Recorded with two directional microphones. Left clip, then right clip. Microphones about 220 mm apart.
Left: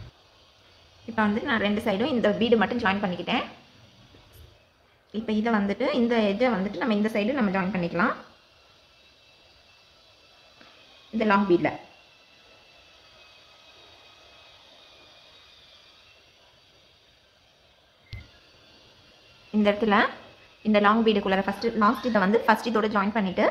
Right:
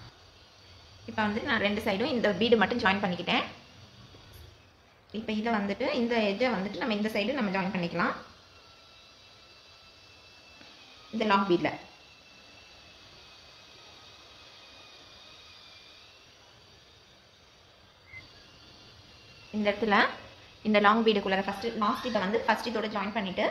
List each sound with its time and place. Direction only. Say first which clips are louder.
1.0 s a woman's voice: left 4 dB; 15° left (ahead or behind)
5.1 s a woman's voice: left 4 dB; 15° left (ahead or behind)
11.1 s a woman's voice: left 4 dB; 5° left (ahead or behind)
19.6 s a woman's voice: left 3 dB; 15° left (ahead or behind)
21.3 s a woman's voice: left 4 dB; 15° left (ahead or behind)